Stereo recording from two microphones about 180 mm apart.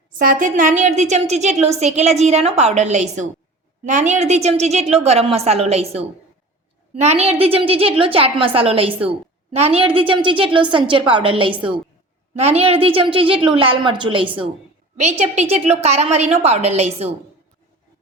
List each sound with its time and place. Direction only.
0.2 s a woman's voice: 50° right (ahead or behind); by 14.4 s 30° right (ahead or behind)
14.9 s a woman's voice: 40° right (ahead or behind)